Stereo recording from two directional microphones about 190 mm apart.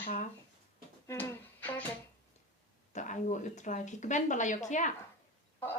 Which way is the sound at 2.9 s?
40° left (ahead or behind).